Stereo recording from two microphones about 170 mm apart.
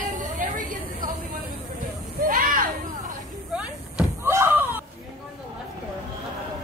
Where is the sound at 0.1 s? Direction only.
50° right (ahead or behind).